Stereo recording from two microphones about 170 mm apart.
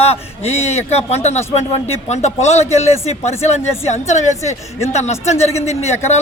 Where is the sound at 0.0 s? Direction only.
40° left (ahead or behind).